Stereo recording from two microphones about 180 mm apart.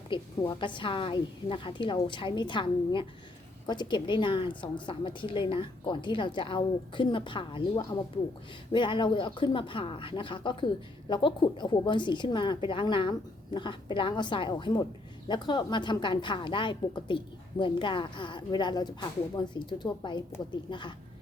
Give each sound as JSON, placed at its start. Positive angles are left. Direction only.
{"t": 0.1, "sound": "speech", "side_deg": 25}